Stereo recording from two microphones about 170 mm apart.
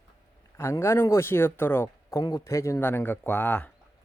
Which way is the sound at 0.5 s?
15° left (ahead or behind).